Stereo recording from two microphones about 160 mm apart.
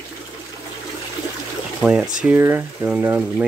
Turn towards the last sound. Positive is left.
turn(degrees=-10)  # may be behind; listen again after turning